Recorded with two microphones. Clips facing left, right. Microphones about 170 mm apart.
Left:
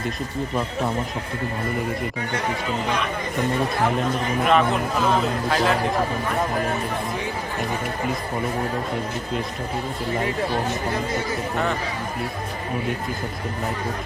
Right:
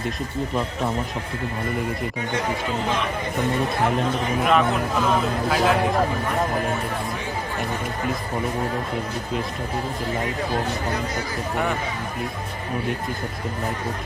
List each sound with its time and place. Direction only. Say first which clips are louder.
4.4 s a man's voice: left 1 dB; centre (ahead or behind)
11.5 s speech: right 1 dB; 10° right (ahead or behind)